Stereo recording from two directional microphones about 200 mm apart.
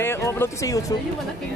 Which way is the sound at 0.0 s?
15° left (ahead or behind).